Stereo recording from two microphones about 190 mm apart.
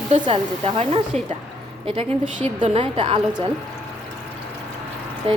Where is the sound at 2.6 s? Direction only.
30° right (ahead or behind).